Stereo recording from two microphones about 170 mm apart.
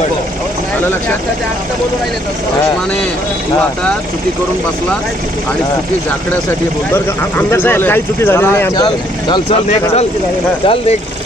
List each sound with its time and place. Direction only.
6.9 s speech: 10° left (ahead or behind)
8.7 s speech: 25° left (ahead or behind)